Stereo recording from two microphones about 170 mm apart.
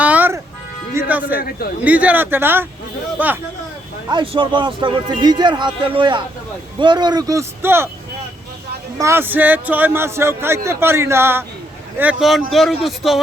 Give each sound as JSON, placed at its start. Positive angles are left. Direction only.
{"t": 0.0, "sound": "music", "side_deg": -10}
{"t": 1.4, "sound": "a man's voice", "side_deg": 60}
{"t": 1.8, "sound": "a man's voice", "side_deg": -10}
{"t": 4.1, "sound": "a man's voice", "side_deg": -30}
{"t": 9.0, "sound": "a man's voice", "side_deg": -15}